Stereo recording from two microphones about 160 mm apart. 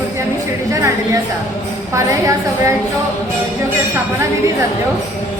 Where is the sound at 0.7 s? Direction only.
20° right (ahead or behind).